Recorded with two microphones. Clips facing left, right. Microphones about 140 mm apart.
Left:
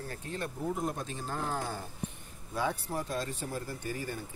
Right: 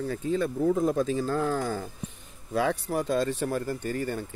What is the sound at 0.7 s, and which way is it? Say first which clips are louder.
Speech: right 10 dB; 90° right.